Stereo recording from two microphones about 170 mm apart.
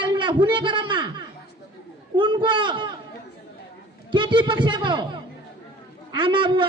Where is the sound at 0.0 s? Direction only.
30° right (ahead or behind).